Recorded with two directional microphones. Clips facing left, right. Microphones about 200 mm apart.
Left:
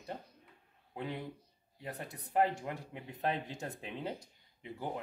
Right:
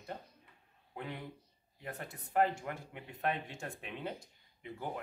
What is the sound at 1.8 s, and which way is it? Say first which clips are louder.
Speech: left 1 dB; 20° left (ahead or behind).